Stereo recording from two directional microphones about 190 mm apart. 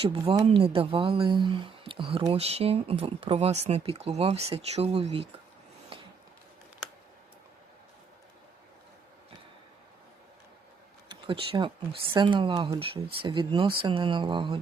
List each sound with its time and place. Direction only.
0.0 s speech: 30° right (ahead or behind)
5.9 s a sound: 30° right (ahead or behind)
11.1 s speech: 25° right (ahead or behind)